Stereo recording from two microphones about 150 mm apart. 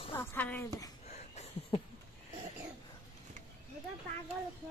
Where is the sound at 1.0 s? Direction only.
45° left (ahead or behind).